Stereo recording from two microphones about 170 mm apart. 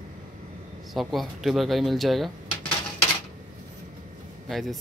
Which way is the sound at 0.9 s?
Centre (ahead or behind).